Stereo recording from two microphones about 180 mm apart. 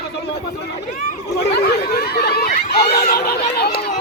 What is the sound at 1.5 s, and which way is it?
Snicker, 65° left (ahead or behind).